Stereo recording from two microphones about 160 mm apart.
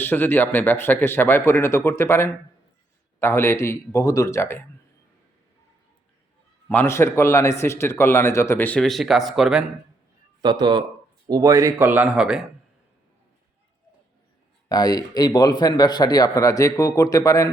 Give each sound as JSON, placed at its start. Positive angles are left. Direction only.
{"t": 0.0, "sound": "a man's voice", "side_deg": 10}
{"t": 6.7, "sound": "a man's voice", "side_deg": 15}
{"t": 10.4, "sound": "speech", "side_deg": -30}
{"t": 14.7, "sound": "speech", "side_deg": 25}